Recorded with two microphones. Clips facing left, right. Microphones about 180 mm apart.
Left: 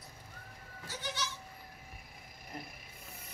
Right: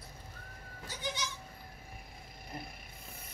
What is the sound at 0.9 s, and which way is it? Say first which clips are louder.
Goat: right 1 dB; 15° right (ahead or behind).